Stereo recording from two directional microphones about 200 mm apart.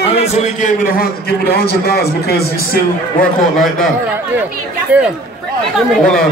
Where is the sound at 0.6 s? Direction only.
50° left (ahead or behind).